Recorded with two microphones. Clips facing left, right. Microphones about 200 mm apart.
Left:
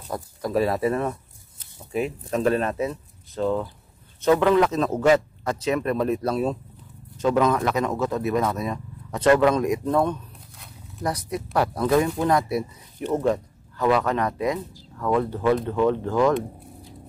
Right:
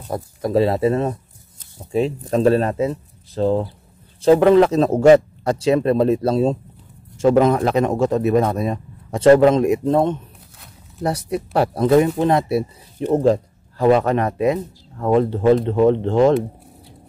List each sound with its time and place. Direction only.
0.1 s speech: 25° right (ahead or behind)